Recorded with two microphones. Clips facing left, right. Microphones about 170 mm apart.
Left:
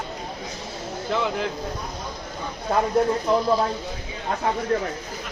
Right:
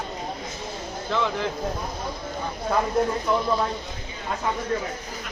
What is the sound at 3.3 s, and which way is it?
Speech, 25° left (ahead or behind).